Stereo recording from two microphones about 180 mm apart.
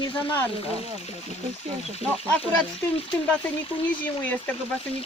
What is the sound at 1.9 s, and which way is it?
Speech, 35° left (ahead or behind).